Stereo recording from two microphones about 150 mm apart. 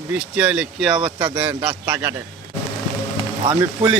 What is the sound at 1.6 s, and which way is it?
Speech, 10° right (ahead or behind).